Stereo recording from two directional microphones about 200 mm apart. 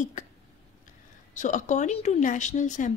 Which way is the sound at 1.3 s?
40° left (ahead or behind).